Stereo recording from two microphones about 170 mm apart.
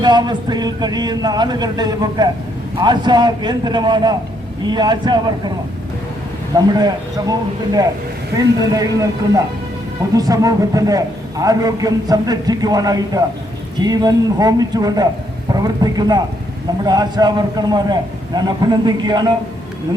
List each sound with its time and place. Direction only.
0.0 s a man's voice: 25° right (ahead or behind)
6.5 s a man's voice: 25° right (ahead or behind)